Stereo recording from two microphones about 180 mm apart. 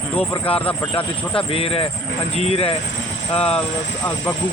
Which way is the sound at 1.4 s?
30° left (ahead or behind).